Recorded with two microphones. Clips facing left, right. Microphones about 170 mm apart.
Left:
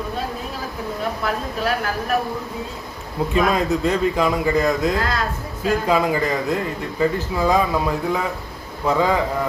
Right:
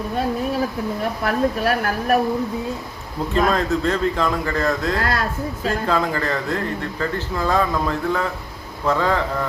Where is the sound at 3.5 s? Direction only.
10° left (ahead or behind).